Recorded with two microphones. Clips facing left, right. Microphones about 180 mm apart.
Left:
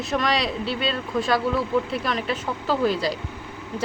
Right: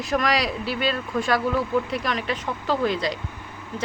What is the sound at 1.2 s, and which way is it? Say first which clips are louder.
Speech: left 1 dB; centre (ahead or behind).